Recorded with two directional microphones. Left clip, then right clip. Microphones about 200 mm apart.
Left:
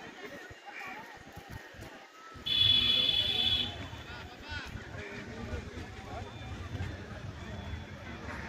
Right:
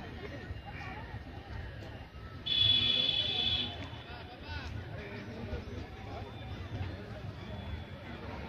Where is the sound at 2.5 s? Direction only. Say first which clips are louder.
Left 2 dB; 65° right (ahead or behind).